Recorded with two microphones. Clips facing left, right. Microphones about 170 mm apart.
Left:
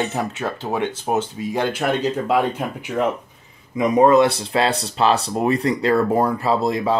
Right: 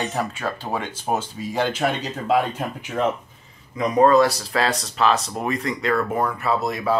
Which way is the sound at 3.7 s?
20° left (ahead or behind).